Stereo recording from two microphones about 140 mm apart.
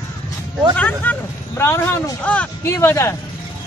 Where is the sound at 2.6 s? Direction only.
20° left (ahead or behind).